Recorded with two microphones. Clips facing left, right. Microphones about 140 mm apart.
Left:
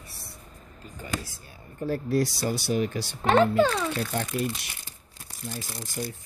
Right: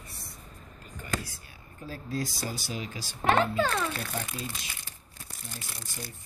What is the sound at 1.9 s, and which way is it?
A child's voice, 70° left (ahead or behind).